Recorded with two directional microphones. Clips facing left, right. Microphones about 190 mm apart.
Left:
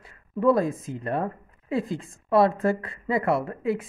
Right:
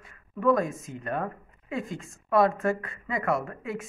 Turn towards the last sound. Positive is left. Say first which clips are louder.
# left 6 dB
turn(degrees=30)  # may be behind; listen again after turning